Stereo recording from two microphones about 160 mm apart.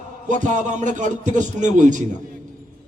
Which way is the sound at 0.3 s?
50° right (ahead or behind).